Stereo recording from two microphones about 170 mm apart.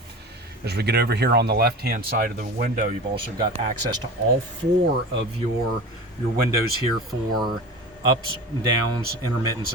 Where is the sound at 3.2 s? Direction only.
25° right (ahead or behind).